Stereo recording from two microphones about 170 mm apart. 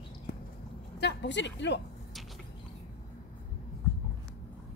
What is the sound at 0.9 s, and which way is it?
Speech, 85° left.